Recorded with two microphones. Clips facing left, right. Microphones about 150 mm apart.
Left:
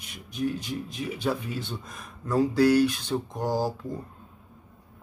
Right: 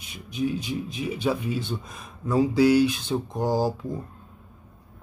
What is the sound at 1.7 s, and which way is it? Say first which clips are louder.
Speech: right 4 dB; 10° right (ahead or behind).